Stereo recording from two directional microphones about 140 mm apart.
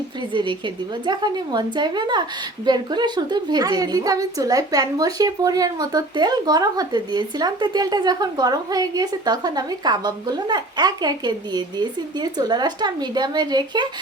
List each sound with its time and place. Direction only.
0.3 s a woman's voice: 35° right (ahead or behind)